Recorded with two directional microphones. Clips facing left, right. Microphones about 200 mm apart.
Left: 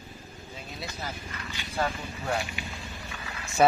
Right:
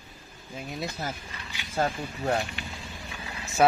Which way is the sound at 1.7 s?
40° right (ahead or behind).